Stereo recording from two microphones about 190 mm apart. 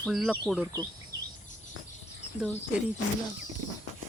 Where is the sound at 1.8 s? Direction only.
90° left.